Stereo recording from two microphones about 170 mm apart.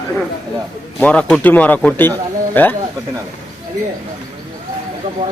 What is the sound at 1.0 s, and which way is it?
Speech, 5° left (ahead or behind).